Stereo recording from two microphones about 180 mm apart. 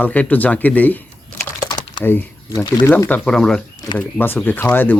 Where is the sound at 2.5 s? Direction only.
25° left (ahead or behind).